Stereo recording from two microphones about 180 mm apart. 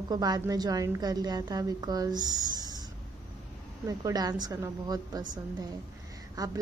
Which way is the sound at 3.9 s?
20° right (ahead or behind).